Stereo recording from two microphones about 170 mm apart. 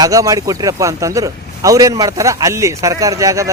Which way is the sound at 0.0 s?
20° right (ahead or behind).